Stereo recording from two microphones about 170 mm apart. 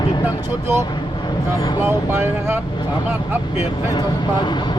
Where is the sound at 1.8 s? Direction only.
15° right (ahead or behind).